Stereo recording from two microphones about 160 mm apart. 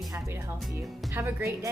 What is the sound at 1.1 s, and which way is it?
Speech, 15° right (ahead or behind).